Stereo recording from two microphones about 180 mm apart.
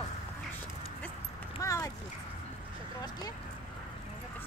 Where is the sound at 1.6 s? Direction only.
15° left (ahead or behind).